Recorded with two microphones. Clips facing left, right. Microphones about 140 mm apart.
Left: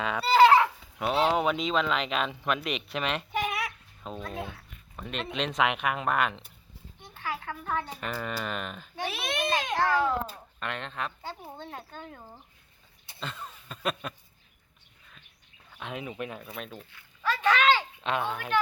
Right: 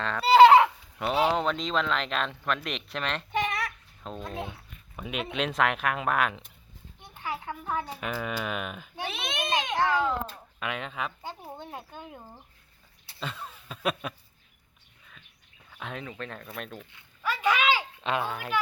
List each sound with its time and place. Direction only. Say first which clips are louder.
0.0 s speech: left 1 dB; 10° left (ahead or behind)
0.3 s goat: right 4 dB; 25° right (ahead or behind)
1.3 s speech: left 1 dB; 10° left (ahead or behind)
4.4 s speech: right 1 dB; 20° right (ahead or behind)
4.9 s speech: right 2 dB; 5° right (ahead or behind)
7.1 s speech: right 1 dB; 15° right (ahead or behind)
9.0 s a child's voice: left 2 dB; 5° left (ahead or behind)
9.4 s baby cry: even; 20° right (ahead or behind)
10.0 s speech: left 1 dB; 5° left (ahead or behind)
10.6 s speech: right 1 dB; 5° right (ahead or behind)
13.1 s a sound: right 2 dB; 5° right (ahead or behind)
15.7 s a sound: left 1 dB; 5° left (ahead or behind)
16.0 s speech: left 2 dB; 15° left (ahead or behind)
16.9 s a sound: left 2 dB; 10° right (ahead or behind)